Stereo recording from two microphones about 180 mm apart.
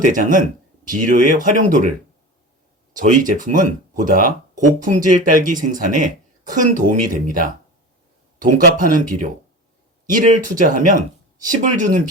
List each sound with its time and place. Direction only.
0.1 s speech: 50° right (ahead or behind)
2.9 s speech: 45° right (ahead or behind)